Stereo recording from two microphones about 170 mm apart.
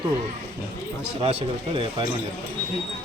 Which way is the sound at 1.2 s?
35° right (ahead or behind).